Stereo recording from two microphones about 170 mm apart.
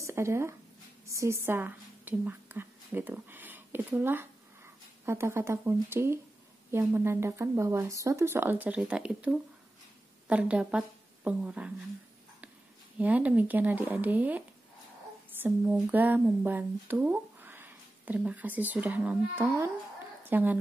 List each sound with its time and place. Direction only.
0.0 s a woman's voice: 15° right (ahead or behind)
13.0 s speech: 10° right (ahead or behind)
15.4 s speech: 10° right (ahead or behind)